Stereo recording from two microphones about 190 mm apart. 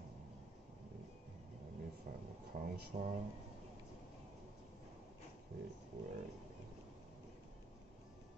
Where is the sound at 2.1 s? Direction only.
40° right (ahead or behind).